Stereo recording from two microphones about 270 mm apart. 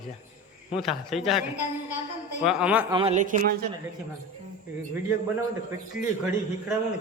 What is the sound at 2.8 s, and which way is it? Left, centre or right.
Speech, centre.